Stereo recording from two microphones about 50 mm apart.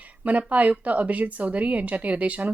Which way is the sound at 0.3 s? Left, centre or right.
Right.